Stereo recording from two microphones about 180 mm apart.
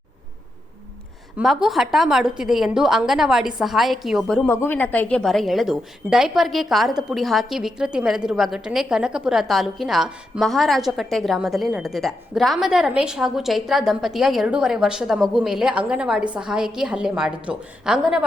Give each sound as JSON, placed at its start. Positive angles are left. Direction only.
{"t": 1.4, "sound": "a woman's voice", "side_deg": 0}
{"t": 4.4, "sound": "a woman's voice", "side_deg": 15}